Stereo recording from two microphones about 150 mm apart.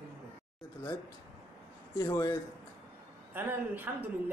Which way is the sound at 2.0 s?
30° left (ahead or behind).